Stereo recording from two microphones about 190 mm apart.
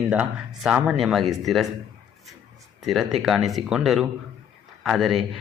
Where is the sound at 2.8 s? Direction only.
Centre (ahead or behind).